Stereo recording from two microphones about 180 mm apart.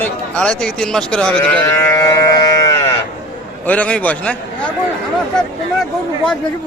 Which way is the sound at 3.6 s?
10° left (ahead or behind).